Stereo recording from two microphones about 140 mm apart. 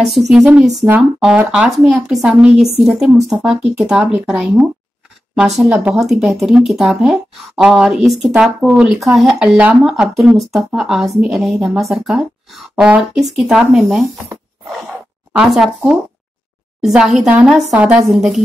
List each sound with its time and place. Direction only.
0.0 s speech: centre (ahead or behind)
15.3 s speech: centre (ahead or behind)